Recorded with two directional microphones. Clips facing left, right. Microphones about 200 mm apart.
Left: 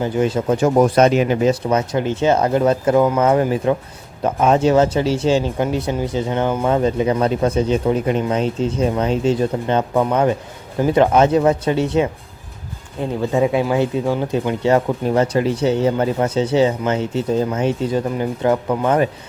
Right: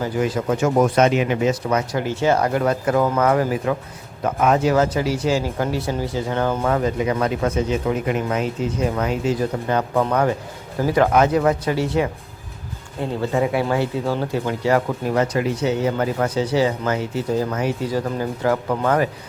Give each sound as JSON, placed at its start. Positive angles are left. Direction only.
{"t": 0.0, "sound": "speech", "side_deg": 25}